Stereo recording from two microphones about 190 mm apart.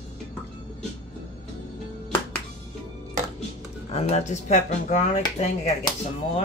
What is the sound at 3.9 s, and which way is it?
Speech, 35° left (ahead or behind).